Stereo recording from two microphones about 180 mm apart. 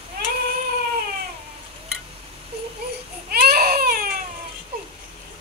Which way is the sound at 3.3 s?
55° right (ahead or behind).